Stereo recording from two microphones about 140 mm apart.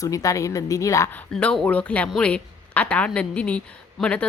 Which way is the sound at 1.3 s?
5° left (ahead or behind).